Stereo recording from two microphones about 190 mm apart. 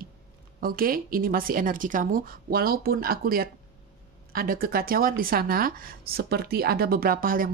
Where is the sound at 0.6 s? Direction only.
50° right (ahead or behind).